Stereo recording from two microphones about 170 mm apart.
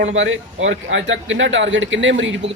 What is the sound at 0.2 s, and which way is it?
Speech, 90° right.